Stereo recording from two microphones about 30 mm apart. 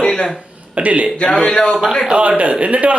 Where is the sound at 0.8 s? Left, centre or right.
Right.